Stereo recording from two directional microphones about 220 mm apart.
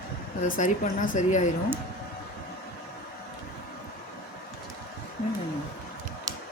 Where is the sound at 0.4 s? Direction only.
35° left (ahead or behind).